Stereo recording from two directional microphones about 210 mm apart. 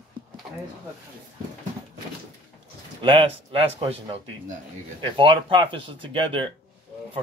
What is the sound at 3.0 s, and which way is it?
Speech, 25° right (ahead or behind).